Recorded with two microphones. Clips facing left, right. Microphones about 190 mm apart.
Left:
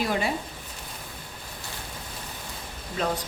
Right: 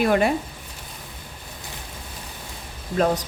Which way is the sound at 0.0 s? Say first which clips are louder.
Right 7 dB; 60° right (ahead or behind).